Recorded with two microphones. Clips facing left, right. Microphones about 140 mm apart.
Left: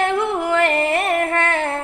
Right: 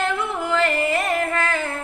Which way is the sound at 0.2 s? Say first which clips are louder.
Left 4 dB; 60° left (ahead or behind).